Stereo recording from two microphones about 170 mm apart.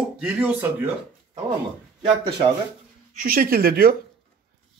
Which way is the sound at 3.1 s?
60° right (ahead or behind).